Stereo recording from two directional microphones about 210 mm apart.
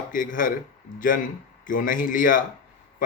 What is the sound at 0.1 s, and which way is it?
Speech, 40° left (ahead or behind).